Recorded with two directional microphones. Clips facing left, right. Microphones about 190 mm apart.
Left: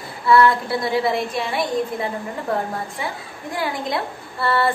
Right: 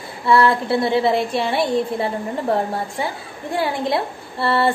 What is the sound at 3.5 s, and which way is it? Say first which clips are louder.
A woman's voice: right 4 dB; 30° right (ahead or behind).